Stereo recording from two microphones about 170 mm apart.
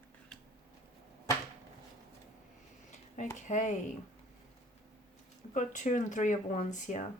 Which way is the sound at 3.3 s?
45° left (ahead or behind).